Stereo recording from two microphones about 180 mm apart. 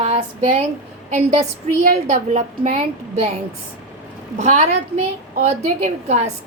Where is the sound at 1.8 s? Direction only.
45° right (ahead or behind).